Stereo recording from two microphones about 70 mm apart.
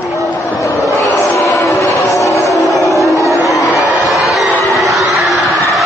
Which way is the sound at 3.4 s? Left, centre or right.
Left.